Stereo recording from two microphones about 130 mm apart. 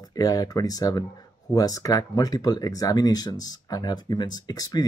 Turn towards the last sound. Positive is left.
turn(degrees=30)  # may be behind; listen again after turning